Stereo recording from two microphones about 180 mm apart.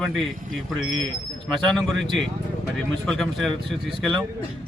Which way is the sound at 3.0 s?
Centre (ahead or behind).